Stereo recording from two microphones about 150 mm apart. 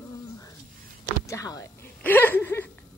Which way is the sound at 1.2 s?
20° left (ahead or behind).